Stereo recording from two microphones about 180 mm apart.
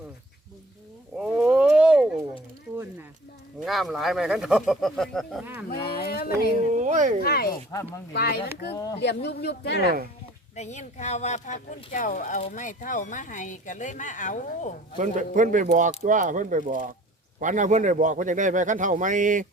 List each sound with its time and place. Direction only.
1.2 s a sound: 5° right (ahead or behind)
3.6 s speech: centre (ahead or behind)
5.7 s speech: 30° left (ahead or behind)
6.0 s a sound: 60° left (ahead or behind)
6.7 s speech: 40° right (ahead or behind)
7.2 s speech: 60° left (ahead or behind)
7.7 s speech: 15° left (ahead or behind)
8.1 s speech: 60° left (ahead or behind)
10.5 s speech: 40° left (ahead or behind)
14.9 s speech: 45° right (ahead or behind)